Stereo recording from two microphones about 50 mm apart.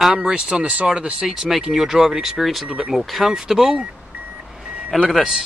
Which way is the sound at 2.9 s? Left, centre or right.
Centre.